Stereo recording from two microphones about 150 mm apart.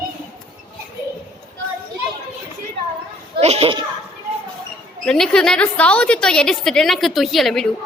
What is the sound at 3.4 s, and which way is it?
Speech, 40° right (ahead or behind).